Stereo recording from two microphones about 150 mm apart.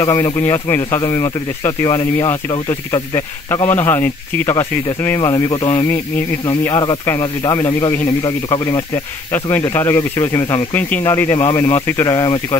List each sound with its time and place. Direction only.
0.0 s speech: 20° left (ahead or behind)
9.3 s speech: 15° left (ahead or behind)